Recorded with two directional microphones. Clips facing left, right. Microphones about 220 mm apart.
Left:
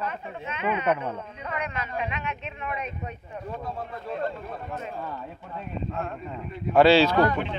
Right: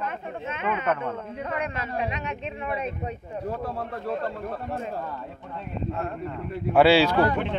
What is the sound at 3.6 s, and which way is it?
Speech, 65° right (ahead or behind).